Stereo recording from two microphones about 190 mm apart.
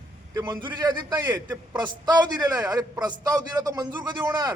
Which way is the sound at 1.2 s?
10° right (ahead or behind).